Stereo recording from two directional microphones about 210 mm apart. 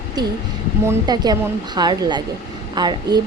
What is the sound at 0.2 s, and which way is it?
Speech, 20° right (ahead or behind).